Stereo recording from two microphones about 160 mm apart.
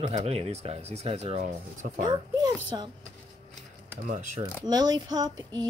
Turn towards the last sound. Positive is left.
turn(degrees=-25)  # may be behind; listen again after turning